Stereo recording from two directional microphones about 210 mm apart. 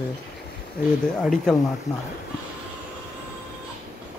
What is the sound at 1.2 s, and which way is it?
Speech, centre (ahead or behind).